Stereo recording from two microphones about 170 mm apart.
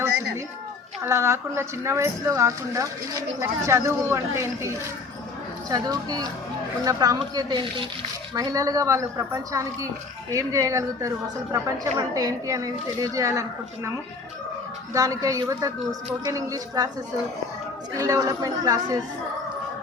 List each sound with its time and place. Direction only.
1.0 s a woman's voice: 15° right (ahead or behind)
14.9 s a woman's voice: 20° right (ahead or behind)
17.9 s a woman's voice: 20° right (ahead or behind)